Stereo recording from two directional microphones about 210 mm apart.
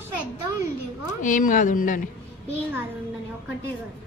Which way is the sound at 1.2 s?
40° left (ahead or behind).